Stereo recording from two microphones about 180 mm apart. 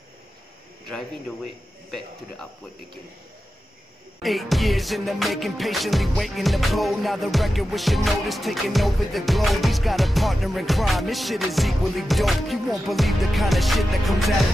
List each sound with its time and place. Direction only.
0.8 s music: centre (ahead or behind)
4.2 s music: centre (ahead or behind)